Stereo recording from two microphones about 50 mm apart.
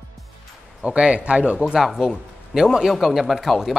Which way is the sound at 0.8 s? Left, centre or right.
Right.